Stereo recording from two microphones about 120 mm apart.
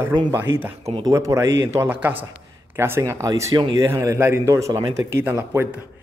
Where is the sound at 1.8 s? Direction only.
15° right (ahead or behind); by 5.0 s 30° right (ahead or behind).